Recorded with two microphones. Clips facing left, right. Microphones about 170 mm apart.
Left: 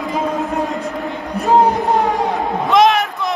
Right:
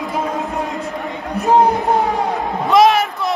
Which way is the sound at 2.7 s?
Centre (ahead or behind).